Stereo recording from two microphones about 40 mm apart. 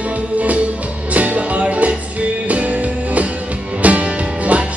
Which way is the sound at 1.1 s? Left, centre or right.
Right.